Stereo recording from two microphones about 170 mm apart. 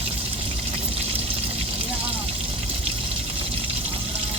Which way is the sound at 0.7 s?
35° right (ahead or behind).